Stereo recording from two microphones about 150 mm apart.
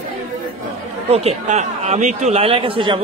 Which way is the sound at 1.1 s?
45° right (ahead or behind).